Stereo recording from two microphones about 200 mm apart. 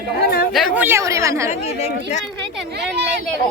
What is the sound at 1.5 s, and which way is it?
Speech, 35° left (ahead or behind).